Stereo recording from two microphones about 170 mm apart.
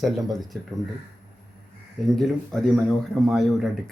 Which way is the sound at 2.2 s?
Centre (ahead or behind).